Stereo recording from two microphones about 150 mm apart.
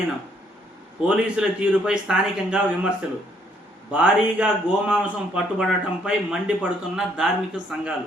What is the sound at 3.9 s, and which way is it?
Speech, 10° right (ahead or behind).